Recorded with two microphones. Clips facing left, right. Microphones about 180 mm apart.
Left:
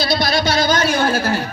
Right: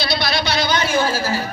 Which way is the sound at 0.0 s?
45° left (ahead or behind).